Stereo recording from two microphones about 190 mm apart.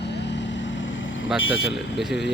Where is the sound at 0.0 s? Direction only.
65° left (ahead or behind); by 1.3 s 85° left.